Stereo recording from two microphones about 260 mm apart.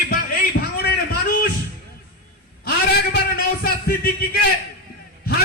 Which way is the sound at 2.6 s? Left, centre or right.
Left.